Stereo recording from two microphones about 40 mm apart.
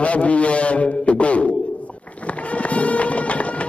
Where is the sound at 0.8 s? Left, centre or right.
Left.